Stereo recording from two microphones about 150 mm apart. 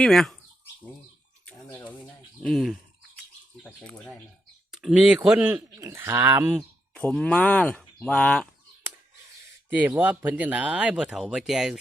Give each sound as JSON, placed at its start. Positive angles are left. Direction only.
{"t": 0.0, "sound": "speech", "side_deg": 0}
{"t": 1.5, "sound": "bird", "side_deg": 10}
{"t": 2.4, "sound": "speech", "side_deg": 0}
{"t": 6.9, "sound": "speech", "side_deg": 5}
{"t": 10.0, "sound": "speech", "side_deg": -10}